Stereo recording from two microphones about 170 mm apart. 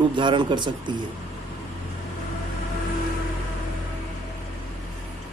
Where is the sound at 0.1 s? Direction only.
30° right (ahead or behind).